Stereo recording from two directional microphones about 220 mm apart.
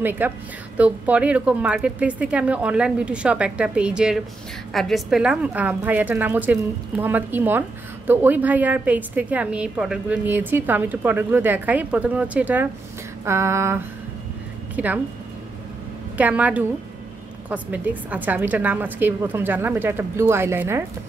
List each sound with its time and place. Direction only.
0.0 s a woman's voice: 10° right (ahead or behind)
16.2 s a woman's voice: 5° right (ahead or behind)